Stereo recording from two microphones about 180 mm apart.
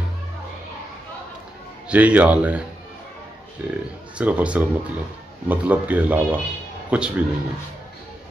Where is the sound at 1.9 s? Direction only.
10° right (ahead or behind).